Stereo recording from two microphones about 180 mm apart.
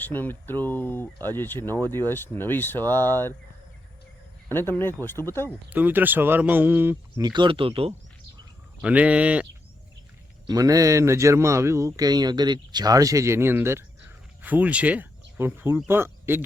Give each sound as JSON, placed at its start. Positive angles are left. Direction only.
{"t": 0.0, "sound": "speech", "side_deg": 10}
{"t": 4.4, "sound": "speech", "side_deg": 10}
{"t": 5.7, "sound": "speech", "side_deg": -10}
{"t": 7.2, "sound": "speech", "side_deg": -25}
{"t": 8.8, "sound": "speech", "side_deg": -5}
{"t": 10.4, "sound": "speech", "side_deg": -20}